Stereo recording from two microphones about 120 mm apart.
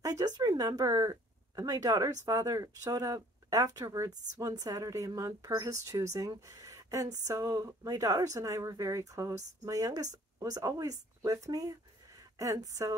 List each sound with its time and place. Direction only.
0.2 s speech: 35° right (ahead or behind)